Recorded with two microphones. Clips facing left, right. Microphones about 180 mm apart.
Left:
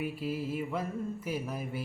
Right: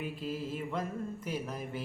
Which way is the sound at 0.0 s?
10° left (ahead or behind).